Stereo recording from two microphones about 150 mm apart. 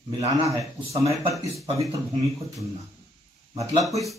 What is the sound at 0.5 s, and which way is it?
Speech, 20° right (ahead or behind).